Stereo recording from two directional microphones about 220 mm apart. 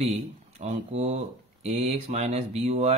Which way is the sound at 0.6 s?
30° right (ahead or behind).